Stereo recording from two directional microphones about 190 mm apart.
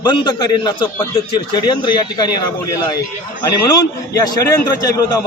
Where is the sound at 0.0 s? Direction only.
25° left (ahead or behind).